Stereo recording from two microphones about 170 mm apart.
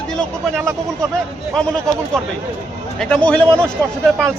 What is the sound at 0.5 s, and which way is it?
Speech, 15° right (ahead or behind).